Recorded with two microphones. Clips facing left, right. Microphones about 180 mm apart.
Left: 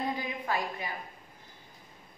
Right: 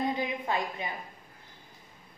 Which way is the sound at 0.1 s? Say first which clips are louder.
Right 2 dB; 20° right (ahead or behind).